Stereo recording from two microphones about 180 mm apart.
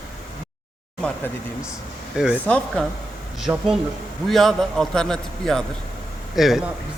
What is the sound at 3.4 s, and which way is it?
A man's voice, 5° right (ahead or behind).